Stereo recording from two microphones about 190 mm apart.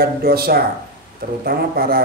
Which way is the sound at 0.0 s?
55° right (ahead or behind).